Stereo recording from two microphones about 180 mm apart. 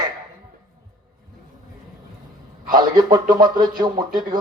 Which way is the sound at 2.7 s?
25° right (ahead or behind).